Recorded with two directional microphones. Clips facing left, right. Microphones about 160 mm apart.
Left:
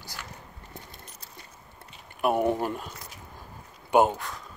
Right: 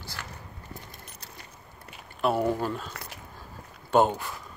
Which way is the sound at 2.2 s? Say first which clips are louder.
Left 1 dB; 20° left (ahead or behind).